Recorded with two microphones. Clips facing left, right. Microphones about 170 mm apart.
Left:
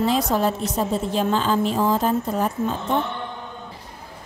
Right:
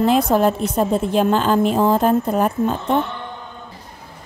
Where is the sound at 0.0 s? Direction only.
55° right (ahead or behind).